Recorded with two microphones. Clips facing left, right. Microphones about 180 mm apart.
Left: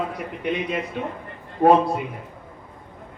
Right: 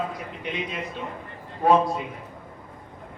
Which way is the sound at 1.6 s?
60° left (ahead or behind).